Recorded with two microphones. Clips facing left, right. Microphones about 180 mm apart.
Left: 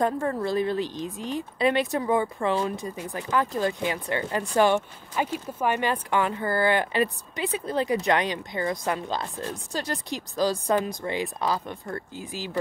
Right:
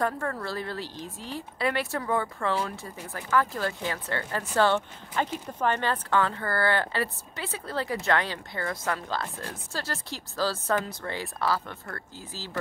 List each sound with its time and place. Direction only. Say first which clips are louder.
0.0 s speech: left 4 dB; 20° left (ahead or behind)